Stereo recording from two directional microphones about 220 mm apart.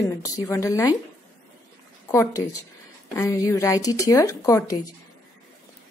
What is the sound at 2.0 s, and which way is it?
Speech, 15° left (ahead or behind).